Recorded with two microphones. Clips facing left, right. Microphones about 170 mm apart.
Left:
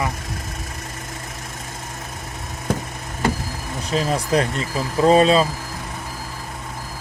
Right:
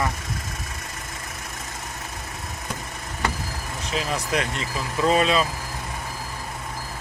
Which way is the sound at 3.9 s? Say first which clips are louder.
Left 6 dB; 35° left (ahead or behind).